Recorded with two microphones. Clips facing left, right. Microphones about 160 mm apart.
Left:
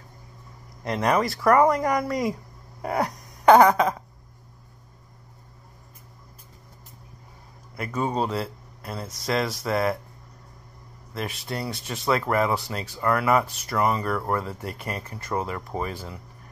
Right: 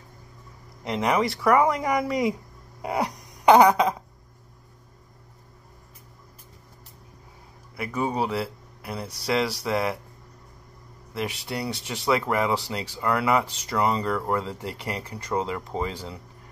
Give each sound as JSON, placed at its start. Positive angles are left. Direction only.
{"t": 0.9, "sound": "speech", "side_deg": -15}
{"t": 2.8, "sound": "a sound", "side_deg": -15}
{"t": 7.7, "sound": "a man's voice", "side_deg": -10}
{"t": 11.4, "sound": "speech", "side_deg": -15}